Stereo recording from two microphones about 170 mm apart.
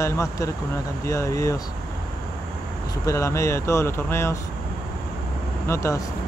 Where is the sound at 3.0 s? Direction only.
15° left (ahead or behind).